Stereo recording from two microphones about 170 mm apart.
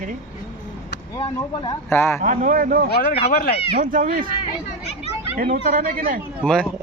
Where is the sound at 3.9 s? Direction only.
50° right (ahead or behind).